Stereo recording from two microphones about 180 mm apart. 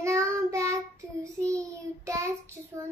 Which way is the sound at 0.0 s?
15° right (ahead or behind).